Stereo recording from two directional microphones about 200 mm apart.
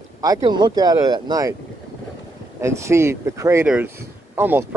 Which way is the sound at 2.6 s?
15° right (ahead or behind).